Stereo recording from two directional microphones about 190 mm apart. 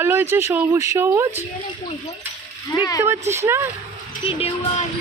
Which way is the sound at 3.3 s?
15° right (ahead or behind).